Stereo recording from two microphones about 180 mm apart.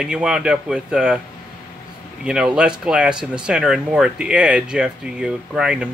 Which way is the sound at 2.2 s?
5° right (ahead or behind).